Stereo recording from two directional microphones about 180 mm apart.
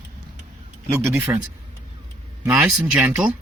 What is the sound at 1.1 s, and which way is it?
Speech, 15° right (ahead or behind).